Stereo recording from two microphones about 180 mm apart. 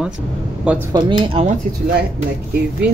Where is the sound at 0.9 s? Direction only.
25° right (ahead or behind).